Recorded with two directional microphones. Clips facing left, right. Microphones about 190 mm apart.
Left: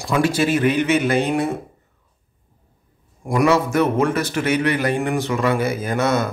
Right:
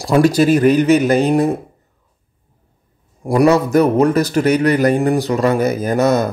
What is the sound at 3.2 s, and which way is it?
Speech, 35° right (ahead or behind).